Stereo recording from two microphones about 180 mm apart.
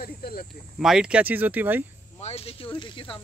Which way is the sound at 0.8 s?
5° right (ahead or behind).